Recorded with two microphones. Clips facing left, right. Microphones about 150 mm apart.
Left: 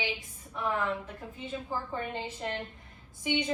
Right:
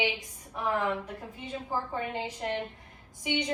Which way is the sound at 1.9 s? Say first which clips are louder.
Right 2 dB; 15° right (ahead or behind).